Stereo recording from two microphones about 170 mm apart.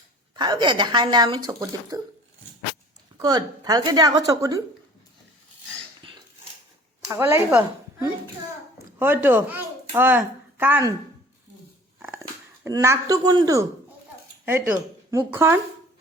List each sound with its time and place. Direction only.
0.3 s speech: 25° right (ahead or behind)
3.2 s speech: 20° right (ahead or behind)
7.1 s a child's voice: 15° right (ahead or behind)
11.9 s dog: 10° right (ahead or behind)
12.6 s speech: 15° right (ahead or behind)
15.1 s speech: 15° right (ahead or behind)